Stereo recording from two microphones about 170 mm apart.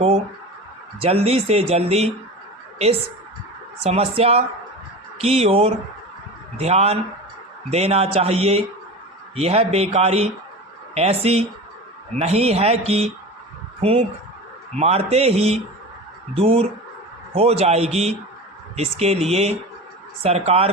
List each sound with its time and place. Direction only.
0.9 s a woman's voice: 35° right (ahead or behind)